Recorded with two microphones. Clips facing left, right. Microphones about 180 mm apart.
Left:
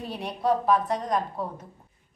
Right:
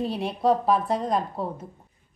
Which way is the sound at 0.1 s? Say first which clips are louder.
Left 1 dB; 25° right (ahead or behind).